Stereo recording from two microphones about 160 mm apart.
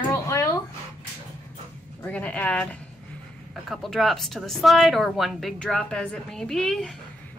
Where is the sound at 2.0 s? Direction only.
10° left (ahead or behind).